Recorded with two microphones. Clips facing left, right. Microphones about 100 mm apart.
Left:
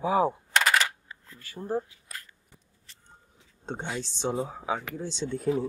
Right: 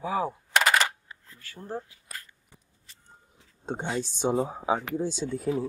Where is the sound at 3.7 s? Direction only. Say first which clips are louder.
Right 3 dB; 10° right (ahead or behind).